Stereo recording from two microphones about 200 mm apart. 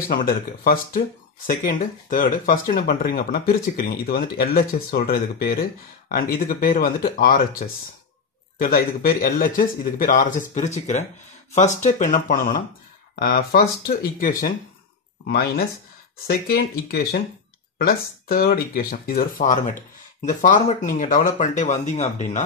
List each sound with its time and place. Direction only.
0.1 s speech: 45° left (ahead or behind)